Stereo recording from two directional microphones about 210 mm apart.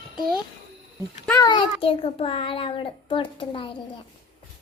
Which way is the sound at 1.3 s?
20° left (ahead or behind).